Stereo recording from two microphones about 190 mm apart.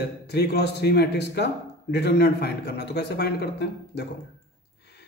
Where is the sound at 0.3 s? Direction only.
60° left (ahead or behind).